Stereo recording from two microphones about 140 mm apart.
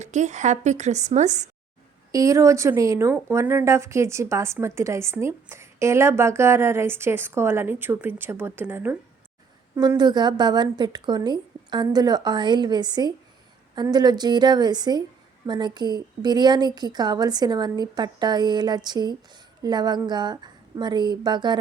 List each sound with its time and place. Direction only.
0.0 s a woman's voice: 55° right (ahead or behind)
2.1 s speech: 25° right (ahead or behind)
10.0 s a woman's voice: 30° right (ahead or behind)